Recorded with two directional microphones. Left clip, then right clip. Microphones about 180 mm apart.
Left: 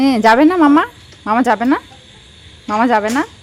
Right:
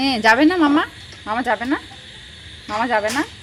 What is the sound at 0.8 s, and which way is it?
Speech, 60° left (ahead or behind).